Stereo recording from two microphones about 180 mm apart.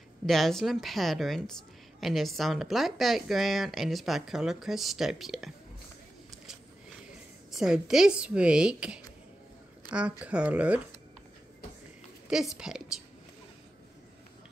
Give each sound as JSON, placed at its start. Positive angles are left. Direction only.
{"t": 0.3, "sound": "a woman's voice", "side_deg": 0}
{"t": 7.5, "sound": "a woman's voice", "side_deg": -5}
{"t": 12.5, "sound": "a woman's voice", "side_deg": -5}